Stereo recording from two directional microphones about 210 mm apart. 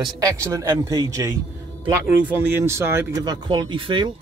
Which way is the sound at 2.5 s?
10° right (ahead or behind).